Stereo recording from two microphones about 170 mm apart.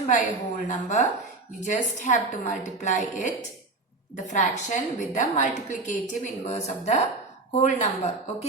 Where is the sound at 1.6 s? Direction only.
45° left (ahead or behind).